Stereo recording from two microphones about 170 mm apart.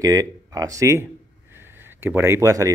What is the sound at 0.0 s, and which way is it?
Speech, 20° right (ahead or behind).